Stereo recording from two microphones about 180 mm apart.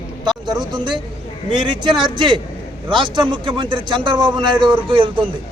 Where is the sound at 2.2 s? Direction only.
25° right (ahead or behind).